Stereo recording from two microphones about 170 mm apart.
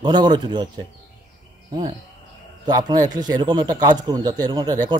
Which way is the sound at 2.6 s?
25° right (ahead or behind).